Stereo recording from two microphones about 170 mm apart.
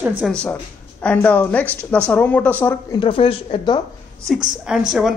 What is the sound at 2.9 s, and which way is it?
Speech, 30° left (ahead or behind).